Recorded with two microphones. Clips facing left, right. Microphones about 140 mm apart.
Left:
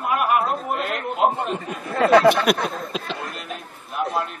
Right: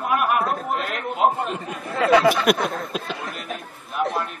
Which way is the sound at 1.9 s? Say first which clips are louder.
Left 2 dB; 45° left (ahead or behind).